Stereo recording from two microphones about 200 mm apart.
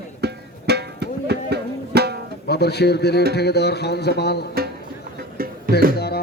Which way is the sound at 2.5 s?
55° left (ahead or behind).